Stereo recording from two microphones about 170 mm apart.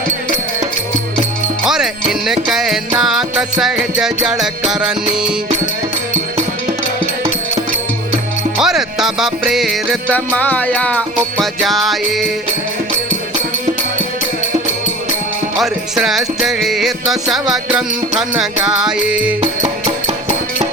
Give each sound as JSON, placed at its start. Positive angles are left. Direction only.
{"t": 1.6, "sound": "music", "side_deg": -5}
{"t": 8.5, "sound": "music", "side_deg": -5}
{"t": 15.5, "sound": "music", "side_deg": 0}
{"t": 19.4, "sound": "music", "side_deg": -40}